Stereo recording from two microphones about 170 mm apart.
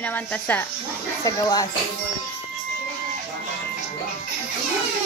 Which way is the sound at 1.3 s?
20° left (ahead or behind).